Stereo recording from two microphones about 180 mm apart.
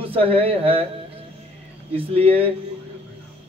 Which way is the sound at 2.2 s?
30° right (ahead or behind).